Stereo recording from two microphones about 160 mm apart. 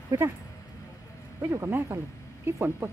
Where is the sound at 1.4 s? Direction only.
15° right (ahead or behind).